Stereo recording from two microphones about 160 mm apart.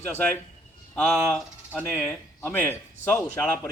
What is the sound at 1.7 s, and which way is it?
Speech, 10° right (ahead or behind).